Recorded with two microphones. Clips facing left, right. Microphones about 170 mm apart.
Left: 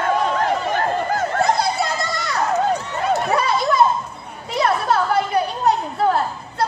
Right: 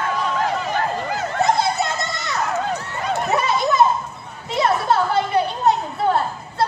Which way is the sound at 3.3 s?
20° right (ahead or behind).